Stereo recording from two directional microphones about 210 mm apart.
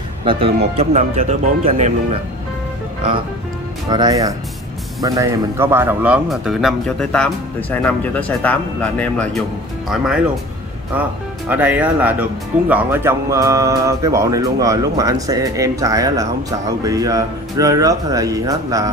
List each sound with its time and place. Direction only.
0.2 s speech: 25° right (ahead or behind)
3.9 s speech: 20° right (ahead or behind); by 10.2 s centre (ahead or behind)
11.4 s speech: 10° right (ahead or behind)